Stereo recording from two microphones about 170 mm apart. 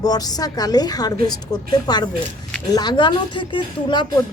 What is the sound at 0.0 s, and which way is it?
A woman's voice, 20° left (ahead or behind).